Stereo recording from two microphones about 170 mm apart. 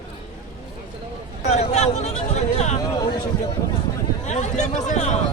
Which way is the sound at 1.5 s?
40° left (ahead or behind).